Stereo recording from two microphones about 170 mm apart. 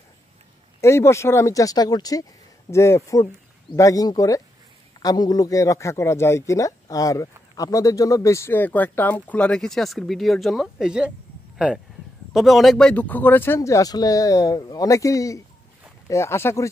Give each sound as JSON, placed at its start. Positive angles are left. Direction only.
{"t": 0.7, "sound": "speech", "side_deg": 15}